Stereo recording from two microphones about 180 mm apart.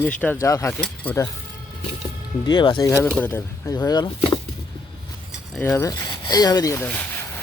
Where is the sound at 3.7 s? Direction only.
20° left (ahead or behind).